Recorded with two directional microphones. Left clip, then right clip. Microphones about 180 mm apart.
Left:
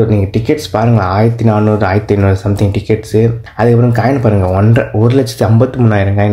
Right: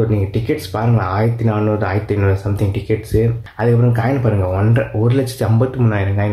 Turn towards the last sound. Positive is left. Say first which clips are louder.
# left 7 dB
turn(degrees=35)  # may be behind; listen again after turning